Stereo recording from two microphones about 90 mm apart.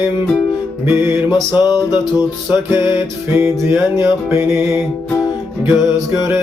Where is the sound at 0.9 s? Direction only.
20° right (ahead or behind).